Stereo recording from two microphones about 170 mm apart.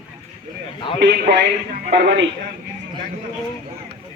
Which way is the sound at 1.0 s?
90° right.